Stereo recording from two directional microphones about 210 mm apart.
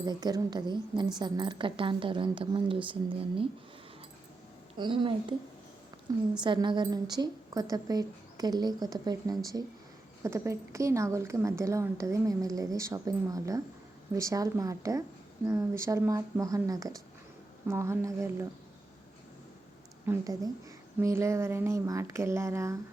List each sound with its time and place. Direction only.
0.0 s a woman's voice: 20° right (ahead or behind)
4.7 s a woman's voice: 25° right (ahead or behind)
20.1 s speech: 15° right (ahead or behind)